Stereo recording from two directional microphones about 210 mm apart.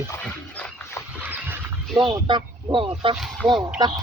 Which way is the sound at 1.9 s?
25° right (ahead or behind).